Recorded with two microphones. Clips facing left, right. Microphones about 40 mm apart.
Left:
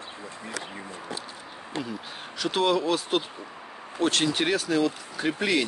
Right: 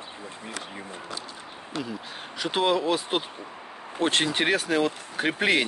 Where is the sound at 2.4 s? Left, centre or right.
Centre.